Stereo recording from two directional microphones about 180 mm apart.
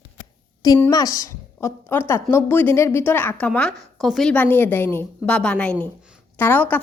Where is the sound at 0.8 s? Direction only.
20° left (ahead or behind).